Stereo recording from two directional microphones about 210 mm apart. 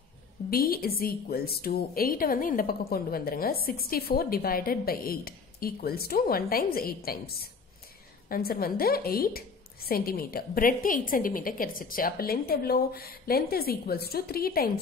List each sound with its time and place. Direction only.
0.5 s a woman's voice: 45° left (ahead or behind)